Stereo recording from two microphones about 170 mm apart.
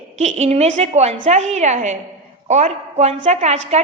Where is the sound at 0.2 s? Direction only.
40° right (ahead or behind).